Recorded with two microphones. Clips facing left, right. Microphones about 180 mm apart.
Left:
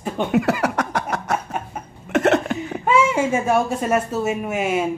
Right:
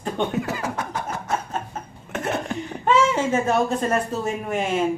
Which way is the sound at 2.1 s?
80° left.